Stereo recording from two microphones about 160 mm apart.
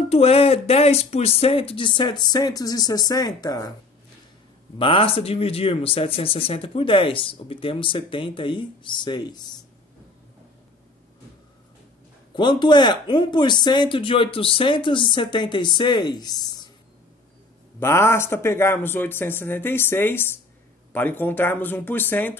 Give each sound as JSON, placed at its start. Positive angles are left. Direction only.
{"t": 0.1, "sound": "speech", "side_deg": 40}
{"t": 4.7, "sound": "speech", "side_deg": 35}
{"t": 12.4, "sound": "speech", "side_deg": 30}
{"t": 17.7, "sound": "a man's voice", "side_deg": 15}